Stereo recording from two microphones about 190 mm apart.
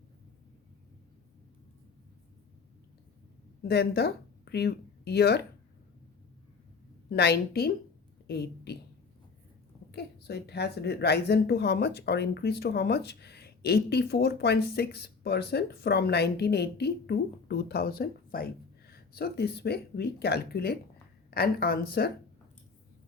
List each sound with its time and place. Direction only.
3.6 s speech: 55° left (ahead or behind)
7.1 s speech: 55° left (ahead or behind)
9.9 s a woman's voice: 60° left (ahead or behind)